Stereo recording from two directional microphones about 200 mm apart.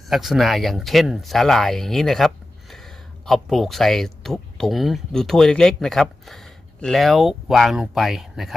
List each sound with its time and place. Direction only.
0.1 s speech: centre (ahead or behind)